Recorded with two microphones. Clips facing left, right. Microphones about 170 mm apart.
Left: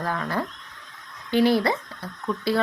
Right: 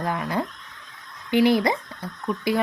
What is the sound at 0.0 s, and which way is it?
Speech, 15° right (ahead or behind).